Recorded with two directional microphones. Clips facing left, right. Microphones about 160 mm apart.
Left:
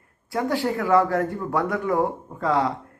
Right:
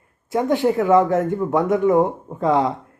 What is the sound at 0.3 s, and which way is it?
Speech, 20° right (ahead or behind).